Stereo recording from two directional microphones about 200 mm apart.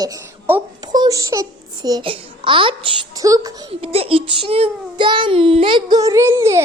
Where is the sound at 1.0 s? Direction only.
15° right (ahead or behind).